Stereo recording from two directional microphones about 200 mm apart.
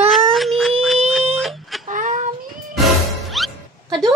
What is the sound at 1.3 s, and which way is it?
Chicken, centre (ahead or behind).